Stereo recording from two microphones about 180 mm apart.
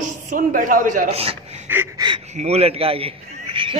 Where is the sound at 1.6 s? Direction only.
10° right (ahead or behind).